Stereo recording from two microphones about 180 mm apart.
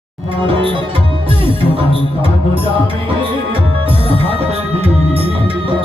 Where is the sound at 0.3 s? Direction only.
30° right (ahead or behind).